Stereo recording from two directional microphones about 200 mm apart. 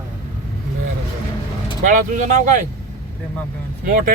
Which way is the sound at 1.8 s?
40° right (ahead or behind).